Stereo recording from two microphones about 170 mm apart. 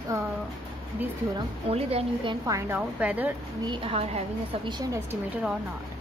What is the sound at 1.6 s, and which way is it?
Speech, 35° right (ahead or behind).